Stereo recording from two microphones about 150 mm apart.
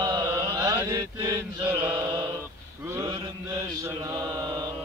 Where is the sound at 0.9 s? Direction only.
25° right (ahead or behind).